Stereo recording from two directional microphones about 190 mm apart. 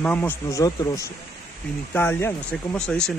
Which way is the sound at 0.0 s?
5° left (ahead or behind).